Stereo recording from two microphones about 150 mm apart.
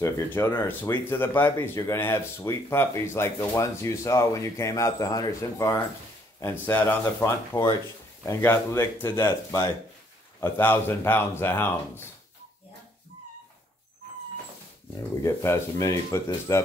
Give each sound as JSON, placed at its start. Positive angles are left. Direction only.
{"t": 0.0, "sound": "speech", "side_deg": 20}
{"t": 15.2, "sound": "speech", "side_deg": 15}